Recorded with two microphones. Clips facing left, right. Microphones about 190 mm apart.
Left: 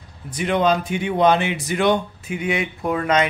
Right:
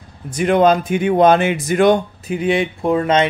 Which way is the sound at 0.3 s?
50° right (ahead or behind).